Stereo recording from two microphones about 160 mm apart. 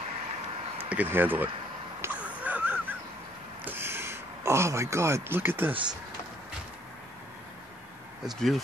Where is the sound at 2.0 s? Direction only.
10° right (ahead or behind).